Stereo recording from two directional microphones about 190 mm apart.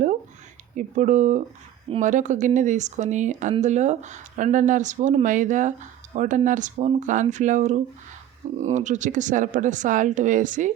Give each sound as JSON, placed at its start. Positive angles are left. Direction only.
{"t": 0.8, "sound": "speech", "side_deg": -40}